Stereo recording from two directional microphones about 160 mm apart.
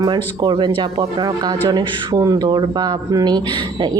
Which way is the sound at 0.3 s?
25° right (ahead or behind).